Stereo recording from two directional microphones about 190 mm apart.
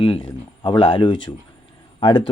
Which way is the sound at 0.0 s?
25° left (ahead or behind).